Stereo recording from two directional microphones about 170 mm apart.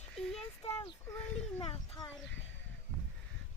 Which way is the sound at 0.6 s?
35° left (ahead or behind).